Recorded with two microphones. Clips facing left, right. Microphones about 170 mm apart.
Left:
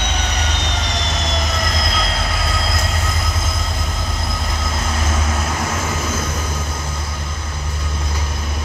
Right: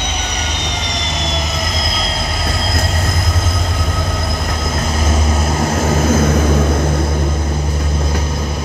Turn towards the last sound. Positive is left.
turn(degrees=-60)  # may be behind; listen again after turning